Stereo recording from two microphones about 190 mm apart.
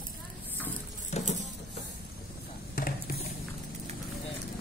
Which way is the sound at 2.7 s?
50° left (ahead or behind).